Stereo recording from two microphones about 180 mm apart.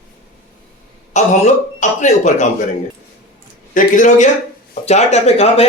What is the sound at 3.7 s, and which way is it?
Speech, 50° left (ahead or behind).